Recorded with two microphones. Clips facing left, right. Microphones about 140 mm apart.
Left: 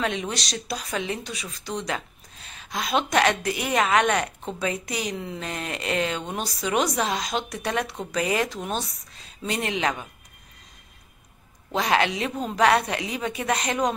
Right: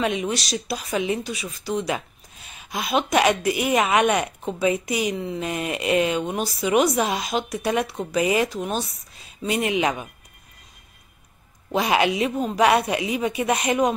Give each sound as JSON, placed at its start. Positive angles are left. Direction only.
{"t": 0.0, "sound": "speech", "side_deg": -5}
{"t": 11.7, "sound": "speech", "side_deg": -10}